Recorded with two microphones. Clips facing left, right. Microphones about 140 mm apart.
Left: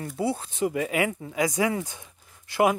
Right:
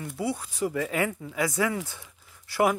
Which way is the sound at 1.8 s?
20° left (ahead or behind).